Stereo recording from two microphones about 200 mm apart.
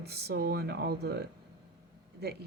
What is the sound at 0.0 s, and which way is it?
Speech, 55° right (ahead or behind).